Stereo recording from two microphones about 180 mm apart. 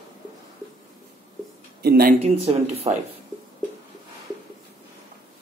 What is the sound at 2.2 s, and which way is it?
Speech, 35° right (ahead or behind).